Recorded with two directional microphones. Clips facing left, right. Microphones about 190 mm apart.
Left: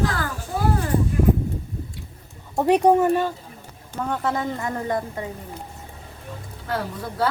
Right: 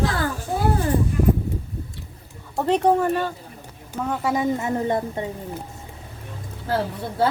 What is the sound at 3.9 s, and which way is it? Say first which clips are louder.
A woman's voice: right 1 dB; 5° right (ahead or behind).